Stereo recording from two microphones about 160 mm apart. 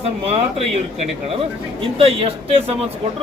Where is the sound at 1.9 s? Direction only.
35° right (ahead or behind).